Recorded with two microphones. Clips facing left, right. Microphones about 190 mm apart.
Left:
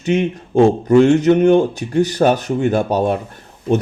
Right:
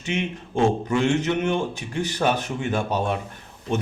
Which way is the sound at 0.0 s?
40° left (ahead or behind).